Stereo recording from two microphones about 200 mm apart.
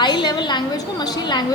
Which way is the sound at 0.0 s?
20° left (ahead or behind).